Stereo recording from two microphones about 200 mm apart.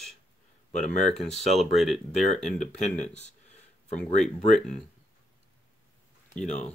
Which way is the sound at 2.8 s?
35° left (ahead or behind).